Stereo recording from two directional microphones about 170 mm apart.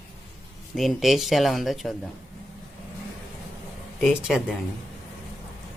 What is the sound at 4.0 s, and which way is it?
Speech, centre (ahead or behind).